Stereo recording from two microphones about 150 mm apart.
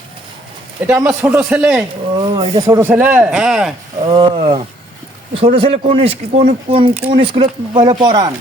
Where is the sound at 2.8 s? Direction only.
15° right (ahead or behind).